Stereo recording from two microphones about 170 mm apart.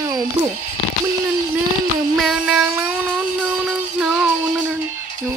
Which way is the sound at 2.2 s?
Centre (ahead or behind).